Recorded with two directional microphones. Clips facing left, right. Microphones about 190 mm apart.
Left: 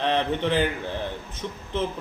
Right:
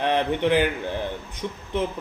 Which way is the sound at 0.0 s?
15° right (ahead or behind).